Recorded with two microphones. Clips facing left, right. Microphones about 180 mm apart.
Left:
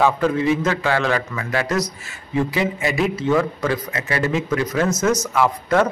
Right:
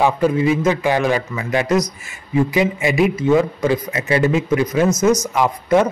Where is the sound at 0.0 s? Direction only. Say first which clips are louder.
Right 2 dB; 10° right (ahead or behind).